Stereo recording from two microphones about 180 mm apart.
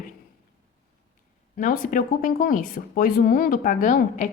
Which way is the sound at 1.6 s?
50° left (ahead or behind).